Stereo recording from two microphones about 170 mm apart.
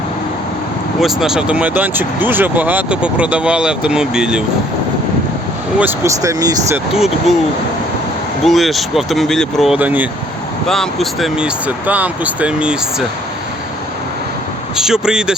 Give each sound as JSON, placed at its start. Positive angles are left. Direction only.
{"t": 1.0, "sound": "speech", "side_deg": 0}
{"t": 5.8, "sound": "speech", "side_deg": -15}
{"t": 6.9, "sound": "speech", "side_deg": 0}
{"t": 8.4, "sound": "speech", "side_deg": 0}
{"t": 10.7, "sound": "speech", "side_deg": 0}
{"t": 14.8, "sound": "speech", "side_deg": -5}